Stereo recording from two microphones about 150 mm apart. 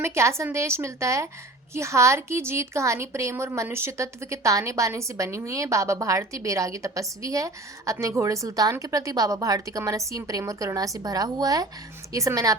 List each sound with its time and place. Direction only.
0.0 s a woman's voice: 20° right (ahead or behind)